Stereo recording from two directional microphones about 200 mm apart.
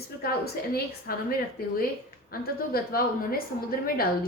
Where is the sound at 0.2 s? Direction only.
50° left (ahead or behind).